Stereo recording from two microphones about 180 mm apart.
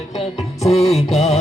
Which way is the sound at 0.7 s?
Centre (ahead or behind).